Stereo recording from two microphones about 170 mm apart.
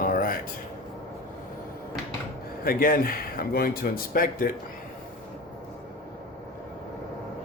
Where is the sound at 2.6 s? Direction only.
60° left (ahead or behind).